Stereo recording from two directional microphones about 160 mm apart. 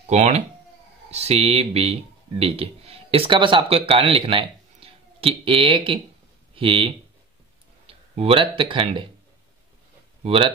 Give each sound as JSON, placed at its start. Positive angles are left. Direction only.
{"t": 0.1, "sound": "speech", "side_deg": -45}
{"t": 10.2, "sound": "speech", "side_deg": -35}